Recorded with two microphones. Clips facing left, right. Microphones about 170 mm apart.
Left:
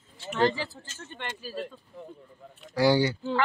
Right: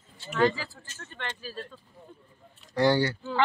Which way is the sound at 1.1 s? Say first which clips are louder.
Left 1 dB; 15° left (ahead or behind).